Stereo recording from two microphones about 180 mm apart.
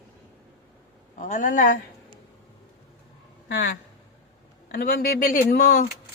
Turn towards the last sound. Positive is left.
turn(degrees=50)  # may be behind; listen again after turning